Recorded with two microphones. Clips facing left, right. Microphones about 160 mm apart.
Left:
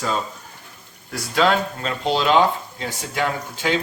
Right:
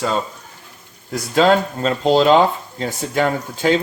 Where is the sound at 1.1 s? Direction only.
45° right (ahead or behind).